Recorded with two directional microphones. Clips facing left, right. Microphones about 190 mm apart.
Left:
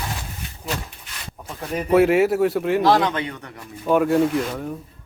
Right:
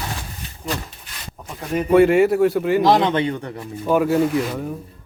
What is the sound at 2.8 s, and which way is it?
Speech, 20° right (ahead or behind).